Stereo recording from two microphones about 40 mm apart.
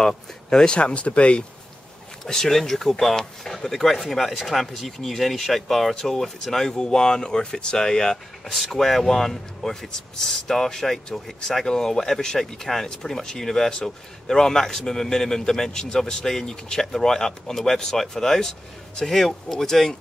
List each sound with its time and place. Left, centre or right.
0.0 s speech: centre
0.7 s speech: left
2.2 s speech: centre
8.7 s speech: centre